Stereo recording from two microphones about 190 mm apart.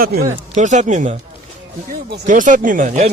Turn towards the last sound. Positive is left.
turn(degrees=-45)  # may be behind; listen again after turning